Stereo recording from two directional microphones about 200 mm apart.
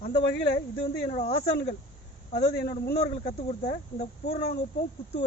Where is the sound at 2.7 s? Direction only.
45° left (ahead or behind).